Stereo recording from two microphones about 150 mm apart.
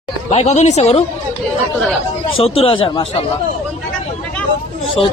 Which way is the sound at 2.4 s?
40° left (ahead or behind).